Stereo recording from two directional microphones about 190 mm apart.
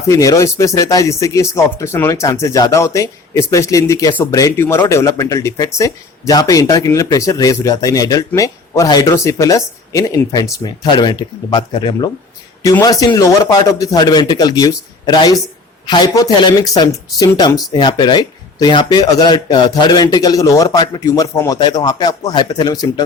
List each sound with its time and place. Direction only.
0.1 s speech: 15° left (ahead or behind)